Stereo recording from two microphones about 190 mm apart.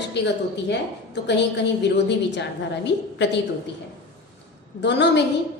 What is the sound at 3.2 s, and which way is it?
Speech, 65° left (ahead or behind).